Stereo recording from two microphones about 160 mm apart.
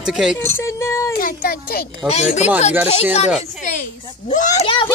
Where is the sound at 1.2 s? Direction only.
60° left (ahead or behind).